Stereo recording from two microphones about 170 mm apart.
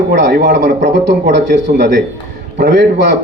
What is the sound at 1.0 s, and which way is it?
A man's voice, 90° right.